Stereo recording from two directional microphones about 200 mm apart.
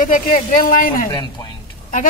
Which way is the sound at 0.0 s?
45° left (ahead or behind).